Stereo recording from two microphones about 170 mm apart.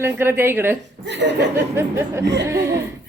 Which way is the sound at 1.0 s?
90° right.